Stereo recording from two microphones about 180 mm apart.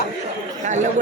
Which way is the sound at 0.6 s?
40° right (ahead or behind).